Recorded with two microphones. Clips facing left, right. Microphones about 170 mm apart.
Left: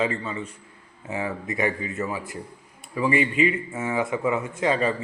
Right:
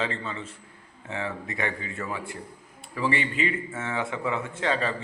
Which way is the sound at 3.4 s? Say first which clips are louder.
Left 5 dB; 15° left (ahead or behind).